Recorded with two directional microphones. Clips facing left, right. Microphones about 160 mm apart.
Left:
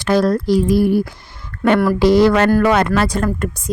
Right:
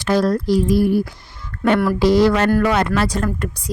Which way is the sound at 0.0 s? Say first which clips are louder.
Left 2 dB; 60° left (ahead or behind).